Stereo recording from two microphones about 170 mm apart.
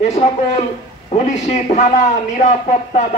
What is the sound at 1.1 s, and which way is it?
A man's voice, 40° left (ahead or behind).